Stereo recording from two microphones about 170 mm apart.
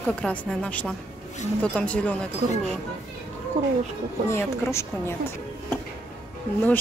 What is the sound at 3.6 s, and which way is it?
Speech, 45° right (ahead or behind).